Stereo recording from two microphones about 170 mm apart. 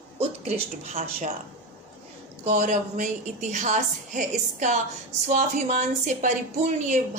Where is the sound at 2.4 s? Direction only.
45° right (ahead or behind).